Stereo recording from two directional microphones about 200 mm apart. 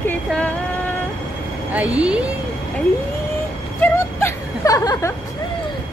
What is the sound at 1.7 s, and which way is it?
Speech, 5° right (ahead or behind).